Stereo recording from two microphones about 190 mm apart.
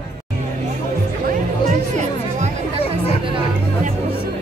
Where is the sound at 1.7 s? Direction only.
40° right (ahead or behind).